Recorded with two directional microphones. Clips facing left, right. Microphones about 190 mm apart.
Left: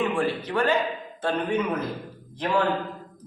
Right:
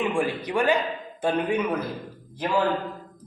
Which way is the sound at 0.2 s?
15° right (ahead or behind).